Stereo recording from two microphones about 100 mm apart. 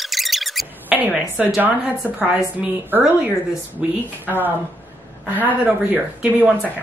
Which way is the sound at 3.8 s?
10° right (ahead or behind).